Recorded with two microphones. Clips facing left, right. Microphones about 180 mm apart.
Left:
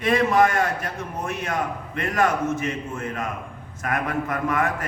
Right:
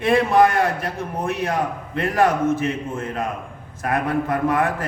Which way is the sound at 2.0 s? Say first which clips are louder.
Right 4 dB; 30° right (ahead or behind).